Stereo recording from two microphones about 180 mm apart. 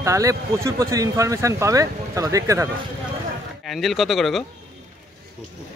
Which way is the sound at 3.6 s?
Centre (ahead or behind).